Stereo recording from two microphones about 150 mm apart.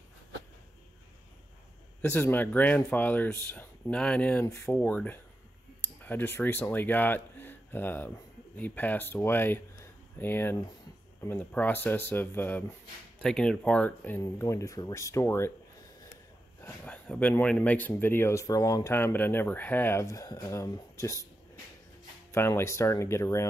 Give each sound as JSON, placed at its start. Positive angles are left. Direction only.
{"t": 2.0, "sound": "speech", "side_deg": 10}
{"t": 4.5, "sound": "speech", "side_deg": 20}
{"t": 16.6, "sound": "speech", "side_deg": 10}
{"t": 22.3, "sound": "speech", "side_deg": 15}